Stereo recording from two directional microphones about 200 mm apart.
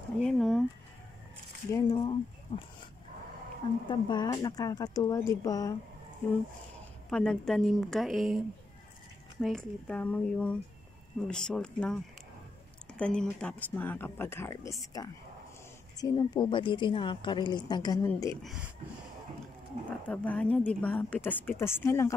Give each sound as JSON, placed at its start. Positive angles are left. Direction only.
{"t": 0.2, "sound": "a sound", "side_deg": 5}
{"t": 1.7, "sound": "speech", "side_deg": 20}
{"t": 3.9, "sound": "a woman's voice", "side_deg": 20}
{"t": 7.1, "sound": "a woman's voice", "side_deg": 5}
{"t": 9.4, "sound": "a woman's voice", "side_deg": 0}
{"t": 18.4, "sound": "a woman's voice", "side_deg": 0}
{"t": 20.1, "sound": "speech", "side_deg": 5}